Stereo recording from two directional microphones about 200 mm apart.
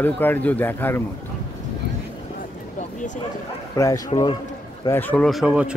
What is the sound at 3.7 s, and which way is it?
Speech, 15° left (ahead or behind).